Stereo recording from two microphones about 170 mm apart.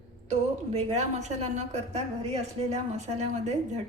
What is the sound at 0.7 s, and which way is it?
A woman's voice, 40° right (ahead or behind).